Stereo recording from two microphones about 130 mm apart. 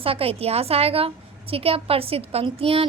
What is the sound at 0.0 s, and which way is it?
A woman's voice, 45° right (ahead or behind).